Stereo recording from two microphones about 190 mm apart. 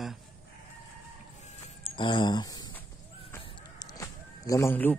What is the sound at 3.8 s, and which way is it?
Vehicle, 20° left (ahead or behind).